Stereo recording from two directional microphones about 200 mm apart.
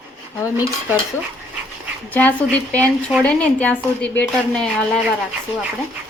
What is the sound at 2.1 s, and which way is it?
Speech, 5° left (ahead or behind).